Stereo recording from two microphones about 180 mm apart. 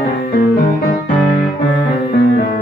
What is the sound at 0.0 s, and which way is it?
Music, 55° left (ahead or behind).